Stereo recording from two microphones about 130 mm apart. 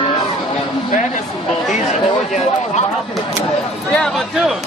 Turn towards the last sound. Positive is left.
turn(degrees=0)  # may be behind; listen again after turning